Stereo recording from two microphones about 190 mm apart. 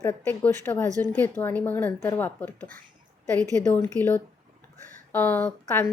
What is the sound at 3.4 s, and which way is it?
Speech, 20° right (ahead or behind).